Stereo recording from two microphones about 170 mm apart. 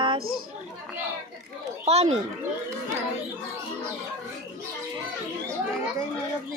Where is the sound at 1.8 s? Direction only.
40° right (ahead or behind).